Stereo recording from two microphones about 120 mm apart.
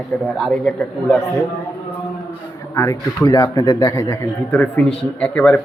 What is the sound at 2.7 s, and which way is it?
A man's voice, 25° left (ahead or behind).